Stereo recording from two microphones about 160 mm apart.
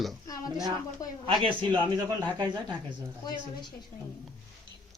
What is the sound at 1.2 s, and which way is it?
Speech, 30° right (ahead or behind).